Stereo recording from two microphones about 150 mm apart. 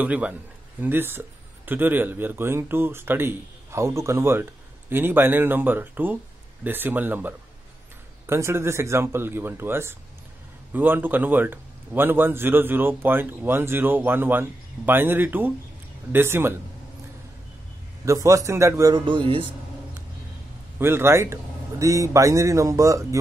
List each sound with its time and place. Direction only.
0.0 s a man's voice: 10° right (ahead or behind)
18.0 s a man's voice: 20° right (ahead or behind)
20.8 s a man's voice: 15° right (ahead or behind)